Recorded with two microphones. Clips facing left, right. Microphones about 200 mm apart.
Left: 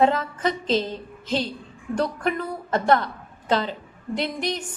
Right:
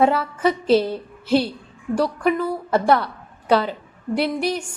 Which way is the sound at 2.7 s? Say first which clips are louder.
Right 2 dB; 10° right (ahead or behind).